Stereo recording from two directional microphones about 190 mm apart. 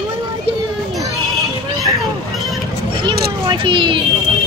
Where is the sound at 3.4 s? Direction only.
25° right (ahead or behind).